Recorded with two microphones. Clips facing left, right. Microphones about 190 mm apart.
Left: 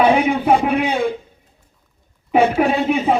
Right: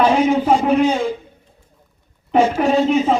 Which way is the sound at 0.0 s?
60° left (ahead or behind).